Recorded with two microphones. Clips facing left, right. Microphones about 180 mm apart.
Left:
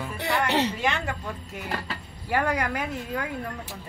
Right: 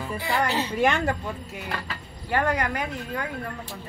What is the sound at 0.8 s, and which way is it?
Speech, 45° right (ahead or behind).